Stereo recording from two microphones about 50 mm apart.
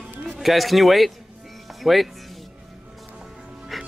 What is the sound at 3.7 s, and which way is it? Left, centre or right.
Music, centre.